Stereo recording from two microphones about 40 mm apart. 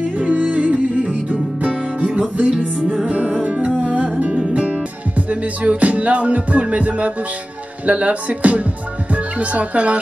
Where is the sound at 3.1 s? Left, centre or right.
Right.